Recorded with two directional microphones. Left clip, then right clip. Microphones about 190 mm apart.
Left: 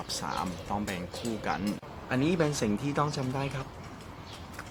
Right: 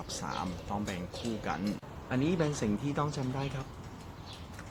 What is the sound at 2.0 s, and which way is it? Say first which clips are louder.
Speech: left 3 dB; 20° left (ahead or behind).